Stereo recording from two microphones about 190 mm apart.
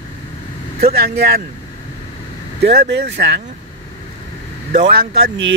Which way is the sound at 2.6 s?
60° right (ahead or behind).